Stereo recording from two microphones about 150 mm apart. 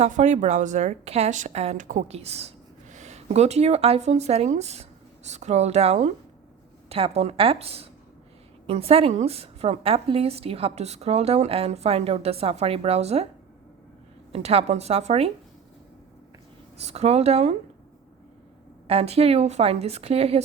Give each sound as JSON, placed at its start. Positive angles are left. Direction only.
{"t": 0.0, "sound": "a woman's voice", "side_deg": -50}
{"t": 14.3, "sound": "a woman's voice", "side_deg": -45}
{"t": 16.7, "sound": "a woman's voice", "side_deg": -45}
{"t": 18.9, "sound": "a woman's voice", "side_deg": -40}